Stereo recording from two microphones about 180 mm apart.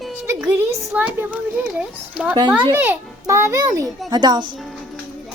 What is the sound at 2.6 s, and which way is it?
Speech, 15° right (ahead or behind).